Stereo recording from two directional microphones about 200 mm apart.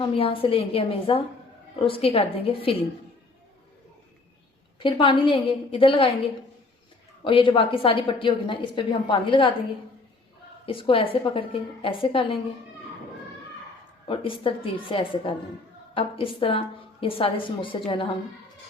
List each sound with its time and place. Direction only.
0.2 s a woman's voice: 30° left (ahead or behind)
4.8 s a woman's voice: 25° left (ahead or behind)
10.7 s a woman's voice: 25° left (ahead or behind)
14.1 s a woman's voice: 25° left (ahead or behind)